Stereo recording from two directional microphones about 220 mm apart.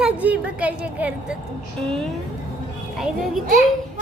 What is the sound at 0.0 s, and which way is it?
A woman's voice, 5° right (ahead or behind).